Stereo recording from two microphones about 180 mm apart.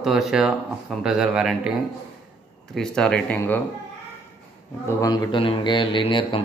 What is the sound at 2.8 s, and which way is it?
Speech, 5° left (ahead or behind).